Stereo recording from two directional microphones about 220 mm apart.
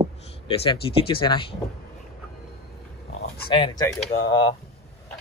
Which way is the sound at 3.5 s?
20° left (ahead or behind).